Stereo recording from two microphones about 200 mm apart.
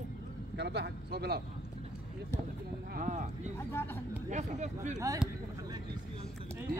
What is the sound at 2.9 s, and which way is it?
Speech, 40° right (ahead or behind).